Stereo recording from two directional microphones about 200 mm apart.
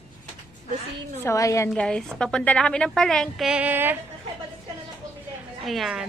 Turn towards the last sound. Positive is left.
turn(degrees=0)  # may be behind; listen again after turning